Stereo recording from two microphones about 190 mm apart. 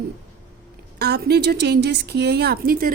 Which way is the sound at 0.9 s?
55° right (ahead or behind).